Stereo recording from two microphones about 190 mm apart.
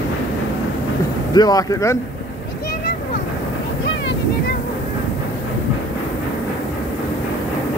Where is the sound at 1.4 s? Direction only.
20° left (ahead or behind).